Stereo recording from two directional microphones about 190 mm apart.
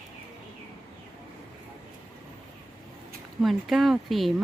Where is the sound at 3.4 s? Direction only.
Centre (ahead or behind).